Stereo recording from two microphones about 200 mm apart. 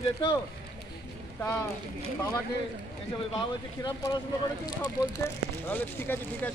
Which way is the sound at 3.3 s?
20° left (ahead or behind).